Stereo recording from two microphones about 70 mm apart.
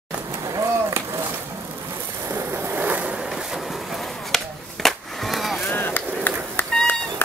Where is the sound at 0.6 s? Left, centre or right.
Right.